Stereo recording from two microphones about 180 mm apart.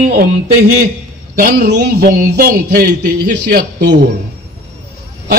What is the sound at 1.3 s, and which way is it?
Speech, 60° right (ahead or behind).